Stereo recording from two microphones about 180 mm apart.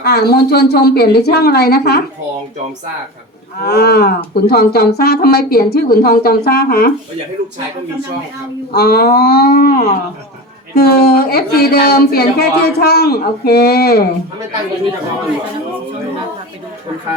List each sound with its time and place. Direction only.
0.0 s a woman's voice: 60° left (ahead or behind)
3.6 s a woman's voice: 65° left (ahead or behind)
8.7 s a woman's voice: 60° left (ahead or behind)